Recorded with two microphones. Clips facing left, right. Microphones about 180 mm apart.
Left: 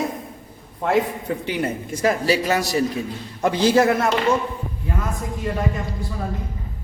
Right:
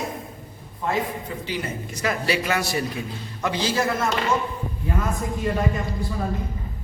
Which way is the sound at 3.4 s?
55° left (ahead or behind).